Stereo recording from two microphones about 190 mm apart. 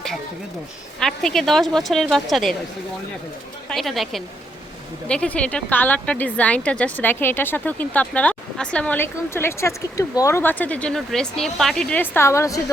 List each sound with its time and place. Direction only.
0.9 s a woman's voice: centre (ahead or behind)
3.7 s a woman's voice: centre (ahead or behind); by 12.7 s 15° left (ahead or behind)